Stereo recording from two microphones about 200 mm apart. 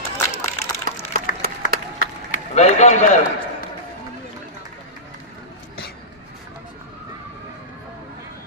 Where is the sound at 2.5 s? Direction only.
35° left (ahead or behind).